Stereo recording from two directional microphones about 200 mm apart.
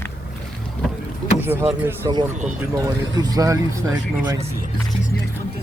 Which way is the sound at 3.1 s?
20° right (ahead or behind).